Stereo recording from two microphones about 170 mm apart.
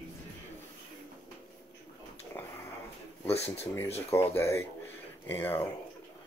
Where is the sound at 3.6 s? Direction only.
15° left (ahead or behind).